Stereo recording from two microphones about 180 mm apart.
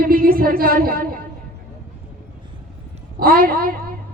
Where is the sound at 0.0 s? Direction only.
55° right (ahead or behind).